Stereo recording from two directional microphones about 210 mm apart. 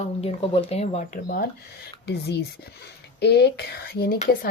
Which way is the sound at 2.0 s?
50° left (ahead or behind).